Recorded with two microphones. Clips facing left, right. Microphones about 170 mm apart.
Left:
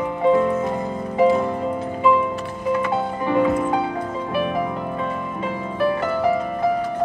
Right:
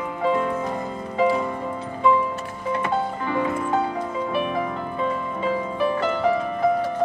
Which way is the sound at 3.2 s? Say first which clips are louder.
Left 9 dB; 15° left (ahead or behind).